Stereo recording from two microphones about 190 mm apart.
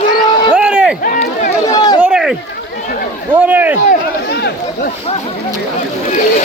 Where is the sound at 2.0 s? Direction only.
5° right (ahead or behind).